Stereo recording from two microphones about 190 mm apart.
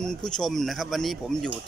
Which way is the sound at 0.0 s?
5° left (ahead or behind).